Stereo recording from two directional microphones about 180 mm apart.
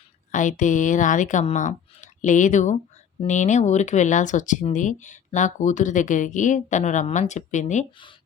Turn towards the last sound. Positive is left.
turn(degrees=40)  # may be behind; listen again after turning